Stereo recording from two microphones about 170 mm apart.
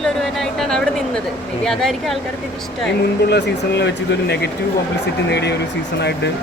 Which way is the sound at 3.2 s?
75° left (ahead or behind).